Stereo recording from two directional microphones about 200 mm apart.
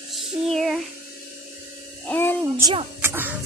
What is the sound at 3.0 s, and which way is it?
Music, 10° right (ahead or behind).